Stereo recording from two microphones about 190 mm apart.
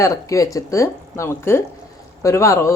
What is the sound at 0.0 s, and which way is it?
A woman's voice, 15° left (ahead or behind).